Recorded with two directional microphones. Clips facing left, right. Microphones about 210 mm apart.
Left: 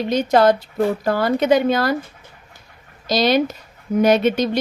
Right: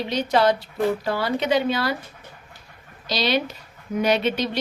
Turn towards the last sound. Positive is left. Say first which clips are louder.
# left 6 dB
turn(degrees=45)  # may be behind; listen again after turning